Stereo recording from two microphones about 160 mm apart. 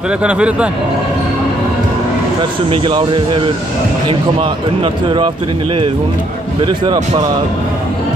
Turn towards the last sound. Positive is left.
turn(degrees=-30)  # may be behind; listen again after turning